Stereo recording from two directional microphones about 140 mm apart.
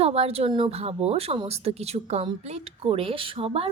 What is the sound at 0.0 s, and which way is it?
Speech, 45° right (ahead or behind).